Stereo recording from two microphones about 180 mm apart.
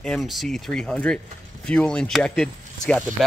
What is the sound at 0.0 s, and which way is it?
Speech, centre (ahead or behind).